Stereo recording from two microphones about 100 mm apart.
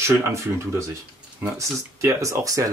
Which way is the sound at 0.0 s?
30° right (ahead or behind).